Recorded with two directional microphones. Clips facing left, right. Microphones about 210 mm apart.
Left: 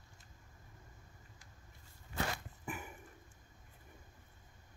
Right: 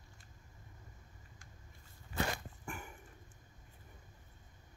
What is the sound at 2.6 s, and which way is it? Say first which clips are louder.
Dog: left 2 dB; 5° left (ahead or behind).